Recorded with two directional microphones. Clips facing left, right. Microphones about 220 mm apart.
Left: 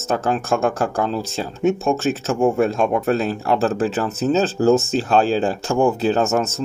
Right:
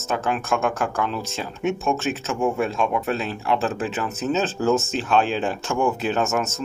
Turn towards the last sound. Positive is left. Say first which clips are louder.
# left 5 dB
turn(degrees=35)  # may be behind; listen again after turning